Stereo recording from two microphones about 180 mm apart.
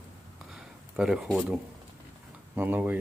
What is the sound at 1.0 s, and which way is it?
Speech, 5° right (ahead or behind).